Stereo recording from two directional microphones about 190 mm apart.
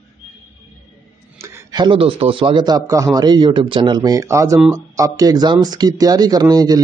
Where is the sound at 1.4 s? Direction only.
20° right (ahead or behind).